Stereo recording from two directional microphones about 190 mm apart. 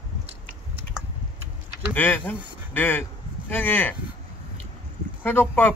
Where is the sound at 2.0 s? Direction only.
10° left (ahead or behind).